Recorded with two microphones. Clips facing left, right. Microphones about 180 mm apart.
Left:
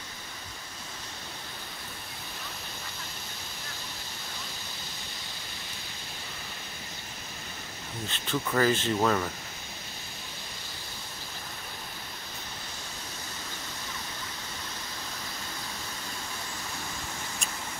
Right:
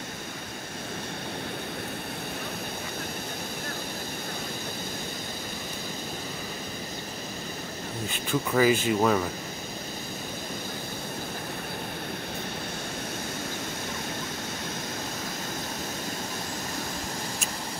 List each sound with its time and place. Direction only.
8.1 s speech: 10° right (ahead or behind)